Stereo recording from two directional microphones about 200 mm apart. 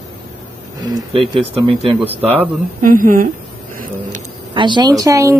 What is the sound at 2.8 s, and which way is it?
Speech, 45° right (ahead or behind).